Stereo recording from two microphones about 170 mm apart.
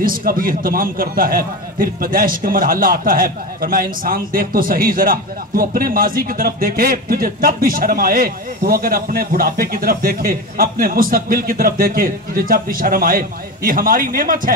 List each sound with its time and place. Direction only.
0.0 s a man's voice: 55° right (ahead or behind)